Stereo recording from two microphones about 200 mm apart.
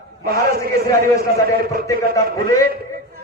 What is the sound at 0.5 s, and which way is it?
Speech, 50° right (ahead or behind).